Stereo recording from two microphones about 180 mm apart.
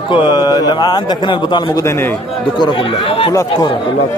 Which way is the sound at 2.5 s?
25° left (ahead or behind).